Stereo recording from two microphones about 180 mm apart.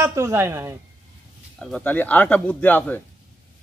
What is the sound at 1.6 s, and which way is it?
Speech, 5° left (ahead or behind).